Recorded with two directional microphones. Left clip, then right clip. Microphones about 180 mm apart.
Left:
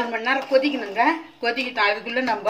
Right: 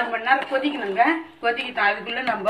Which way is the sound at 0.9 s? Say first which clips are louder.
Right 2 dB; 90° left.